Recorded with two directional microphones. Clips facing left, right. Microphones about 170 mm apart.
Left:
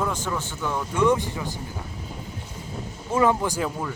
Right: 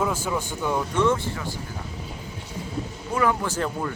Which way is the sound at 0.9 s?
15° left (ahead or behind).